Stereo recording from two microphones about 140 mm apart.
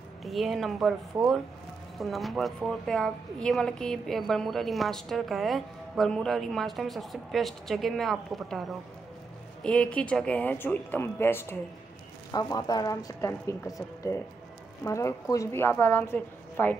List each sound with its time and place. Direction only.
0.2 s a woman's voice: centre (ahead or behind)
2.0 s a woman's voice: centre (ahead or behind)